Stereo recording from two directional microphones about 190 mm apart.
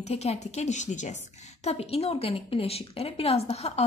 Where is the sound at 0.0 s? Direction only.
35° left (ahead or behind).